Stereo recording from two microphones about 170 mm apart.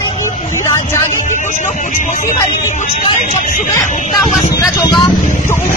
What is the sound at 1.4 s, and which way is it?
Music, 45° left (ahead or behind).